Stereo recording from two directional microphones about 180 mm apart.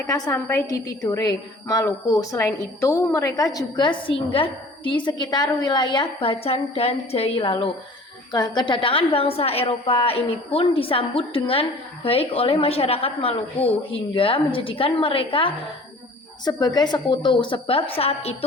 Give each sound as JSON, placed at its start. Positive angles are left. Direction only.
{"t": 0.1, "sound": "a woman's voice", "side_deg": 15}